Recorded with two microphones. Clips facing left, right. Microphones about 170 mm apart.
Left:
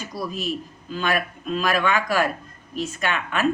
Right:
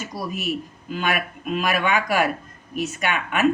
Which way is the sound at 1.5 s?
15° right (ahead or behind).